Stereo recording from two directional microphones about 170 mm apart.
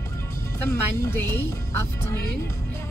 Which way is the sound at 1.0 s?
15° left (ahead or behind).